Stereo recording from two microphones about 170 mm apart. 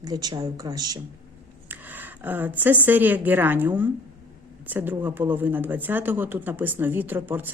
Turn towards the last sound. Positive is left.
turn(degrees=-10)  # may be behind; listen again after turning